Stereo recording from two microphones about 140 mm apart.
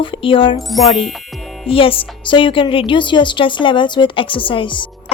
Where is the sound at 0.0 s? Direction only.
40° left (ahead or behind).